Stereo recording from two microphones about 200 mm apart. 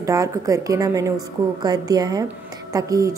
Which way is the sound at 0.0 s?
15° right (ahead or behind).